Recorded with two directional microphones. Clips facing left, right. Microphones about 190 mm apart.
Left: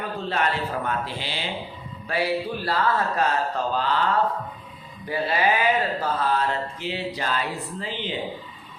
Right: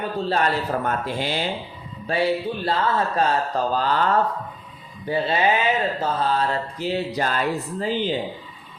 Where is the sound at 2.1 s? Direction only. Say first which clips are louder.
Right 3 dB; 25° right (ahead or behind).